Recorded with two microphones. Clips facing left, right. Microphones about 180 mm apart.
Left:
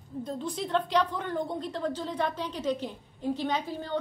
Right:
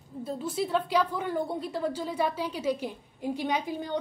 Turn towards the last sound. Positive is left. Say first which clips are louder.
# right 1 dB
turn(degrees=-15)  # may be behind; listen again after turning